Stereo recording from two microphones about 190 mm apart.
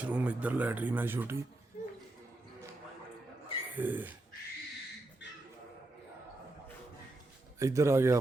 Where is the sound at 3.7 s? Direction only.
10° right (ahead or behind).